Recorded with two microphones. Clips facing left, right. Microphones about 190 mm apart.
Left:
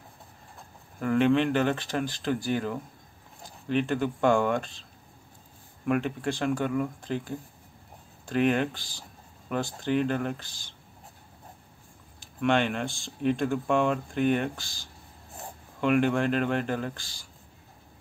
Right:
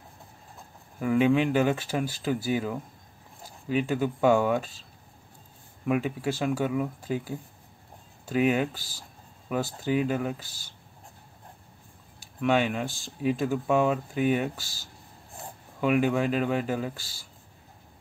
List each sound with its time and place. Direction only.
0.9 s speech: 5° right (ahead or behind)
5.9 s speech: 5° right (ahead or behind)
12.4 s speech: 5° right (ahead or behind)